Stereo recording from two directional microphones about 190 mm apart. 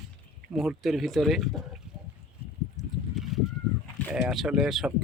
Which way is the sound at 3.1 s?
Centre (ahead or behind).